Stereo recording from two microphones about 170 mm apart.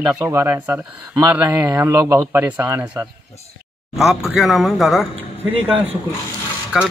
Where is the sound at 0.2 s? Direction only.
15° right (ahead or behind).